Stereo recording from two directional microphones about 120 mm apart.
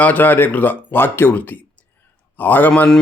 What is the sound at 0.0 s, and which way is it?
Speech, 15° left (ahead or behind).